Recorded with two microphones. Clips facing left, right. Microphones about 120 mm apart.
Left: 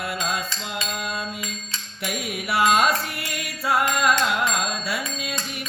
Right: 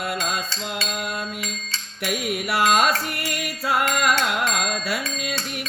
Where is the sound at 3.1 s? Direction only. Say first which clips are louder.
Right 3 dB; 65° right (ahead or behind).